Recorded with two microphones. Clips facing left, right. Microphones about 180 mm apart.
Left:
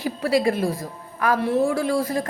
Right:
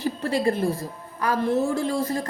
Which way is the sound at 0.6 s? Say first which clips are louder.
Even; 90° left.